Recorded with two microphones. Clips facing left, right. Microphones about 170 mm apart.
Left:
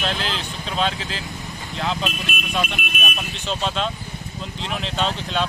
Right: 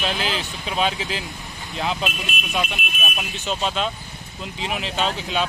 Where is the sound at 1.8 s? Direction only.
15° right (ahead or behind).